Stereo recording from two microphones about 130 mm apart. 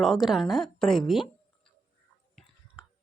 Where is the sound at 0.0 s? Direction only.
Centre (ahead or behind).